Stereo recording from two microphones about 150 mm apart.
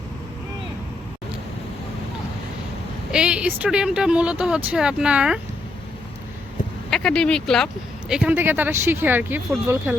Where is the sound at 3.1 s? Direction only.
5° right (ahead or behind).